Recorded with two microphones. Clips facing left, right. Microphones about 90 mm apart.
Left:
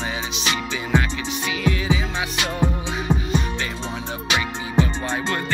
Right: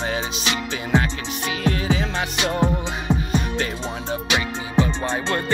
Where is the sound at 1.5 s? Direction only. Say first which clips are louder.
Right 1 dB; 45° right (ahead or behind).